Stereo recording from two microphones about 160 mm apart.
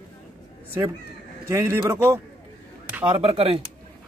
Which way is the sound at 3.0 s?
35° right (ahead or behind).